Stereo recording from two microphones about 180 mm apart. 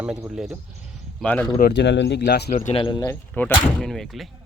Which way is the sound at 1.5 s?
65° left (ahead or behind).